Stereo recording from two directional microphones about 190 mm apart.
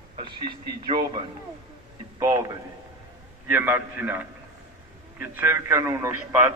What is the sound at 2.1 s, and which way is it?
A man's voice, 20° right (ahead or behind).